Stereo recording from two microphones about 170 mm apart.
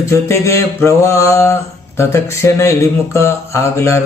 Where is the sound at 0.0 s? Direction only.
15° left (ahead or behind).